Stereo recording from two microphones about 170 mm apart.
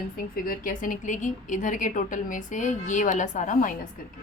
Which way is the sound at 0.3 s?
55° left (ahead or behind).